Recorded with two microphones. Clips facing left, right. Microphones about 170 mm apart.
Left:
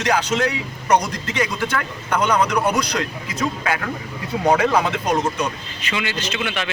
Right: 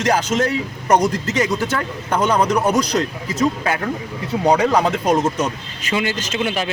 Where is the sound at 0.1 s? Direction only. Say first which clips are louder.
Right 1 dB; 40° right (ahead or behind).